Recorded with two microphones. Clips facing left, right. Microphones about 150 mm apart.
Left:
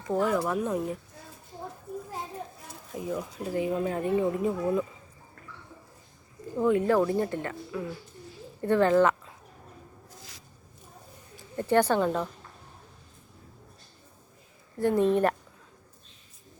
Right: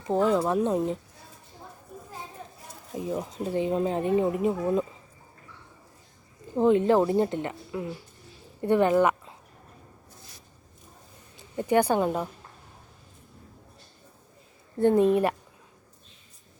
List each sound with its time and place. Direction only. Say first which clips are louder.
0.0 s speech: right 3 dB; 25° right (ahead or behind)
2.9 s speech: right 2 dB; 25° right (ahead or behind)
6.6 s speech: right 3 dB; 25° right (ahead or behind)
10.2 s a sound: left 2 dB; 90° left
11.3 s speech: right 1 dB; 15° right (ahead or behind)
14.8 s speech: right 3 dB; 20° right (ahead or behind)